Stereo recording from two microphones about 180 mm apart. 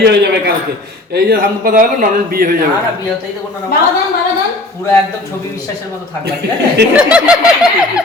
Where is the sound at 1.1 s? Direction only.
55° right (ahead or behind).